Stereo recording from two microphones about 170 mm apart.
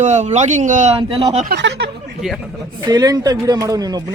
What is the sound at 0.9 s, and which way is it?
Speech, 35° right (ahead or behind).